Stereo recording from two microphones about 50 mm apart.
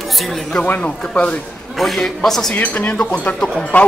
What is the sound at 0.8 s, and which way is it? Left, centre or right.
Speech, left.